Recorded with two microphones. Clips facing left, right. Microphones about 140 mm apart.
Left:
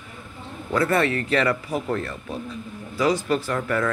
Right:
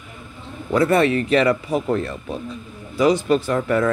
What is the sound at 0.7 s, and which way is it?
Speech, 20° right (ahead or behind).